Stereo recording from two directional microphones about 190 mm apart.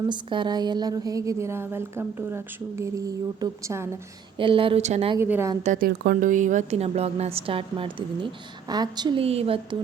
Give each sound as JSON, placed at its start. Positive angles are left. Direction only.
{"t": 0.1, "sound": "a woman's voice", "side_deg": -25}
{"t": 4.4, "sound": "a woman's voice", "side_deg": -25}
{"t": 5.1, "sound": "a woman's voice", "side_deg": -10}
{"t": 5.6, "sound": "a woman's voice", "side_deg": -45}